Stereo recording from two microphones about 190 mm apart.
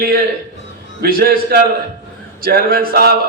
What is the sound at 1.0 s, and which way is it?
A man's voice, 50° right (ahead or behind).